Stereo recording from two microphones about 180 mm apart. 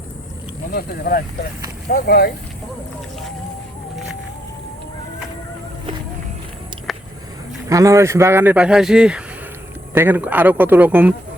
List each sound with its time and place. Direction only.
0.7 s speech: 55° left (ahead or behind)
6.9 s a sound: centre (ahead or behind)
7.7 s speech: 15° right (ahead or behind)